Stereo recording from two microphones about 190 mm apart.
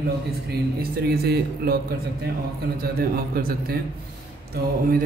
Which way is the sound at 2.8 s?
50° right (ahead or behind).